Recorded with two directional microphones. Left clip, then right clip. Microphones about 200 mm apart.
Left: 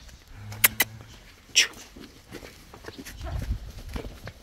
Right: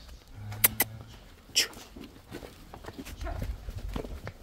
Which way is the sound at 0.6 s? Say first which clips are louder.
Left 6 dB; 10° right (ahead or behind).